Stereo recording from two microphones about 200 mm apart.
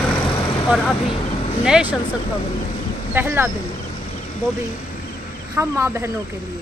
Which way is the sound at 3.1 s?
10° right (ahead or behind).